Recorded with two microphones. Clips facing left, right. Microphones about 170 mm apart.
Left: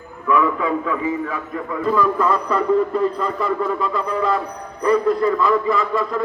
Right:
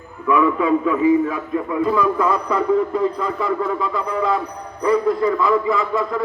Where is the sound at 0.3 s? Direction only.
20° right (ahead or behind).